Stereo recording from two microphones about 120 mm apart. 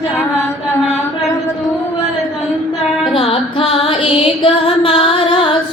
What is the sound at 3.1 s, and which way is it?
Music, 50° left (ahead or behind).